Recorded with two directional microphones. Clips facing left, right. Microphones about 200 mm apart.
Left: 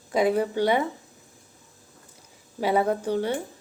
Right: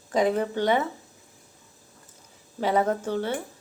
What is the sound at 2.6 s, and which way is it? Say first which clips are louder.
Speech: left 1 dB; 10° left (ahead or behind).